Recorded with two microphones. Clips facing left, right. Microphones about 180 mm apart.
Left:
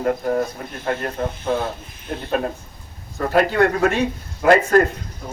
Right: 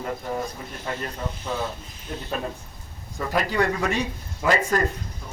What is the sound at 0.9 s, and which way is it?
Speech, 55° left (ahead or behind).